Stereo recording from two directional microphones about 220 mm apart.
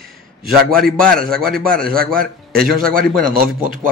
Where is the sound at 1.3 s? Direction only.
40° right (ahead or behind).